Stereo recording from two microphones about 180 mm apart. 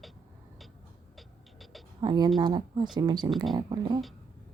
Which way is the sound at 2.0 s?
25° right (ahead or behind).